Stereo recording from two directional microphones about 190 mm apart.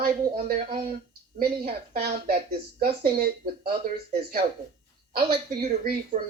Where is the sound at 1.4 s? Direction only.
50° right (ahead or behind).